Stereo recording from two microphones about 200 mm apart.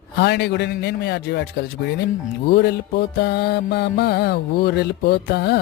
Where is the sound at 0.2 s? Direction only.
55° left (ahead or behind).